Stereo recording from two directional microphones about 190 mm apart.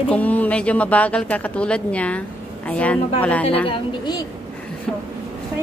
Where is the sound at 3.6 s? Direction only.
25° left (ahead or behind).